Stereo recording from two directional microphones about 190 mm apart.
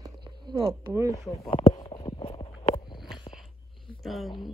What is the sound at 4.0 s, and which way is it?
Speech, centre (ahead or behind).